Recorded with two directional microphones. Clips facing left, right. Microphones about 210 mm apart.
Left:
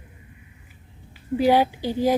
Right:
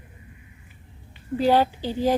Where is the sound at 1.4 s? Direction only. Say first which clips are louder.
Left 1 dB; 10° left (ahead or behind).